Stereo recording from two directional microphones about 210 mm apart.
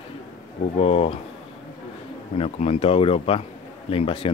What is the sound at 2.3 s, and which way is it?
Speech, 30° left (ahead or behind).